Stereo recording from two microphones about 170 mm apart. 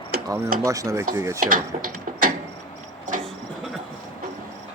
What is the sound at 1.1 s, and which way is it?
Mechanisms, 15° right (ahead or behind).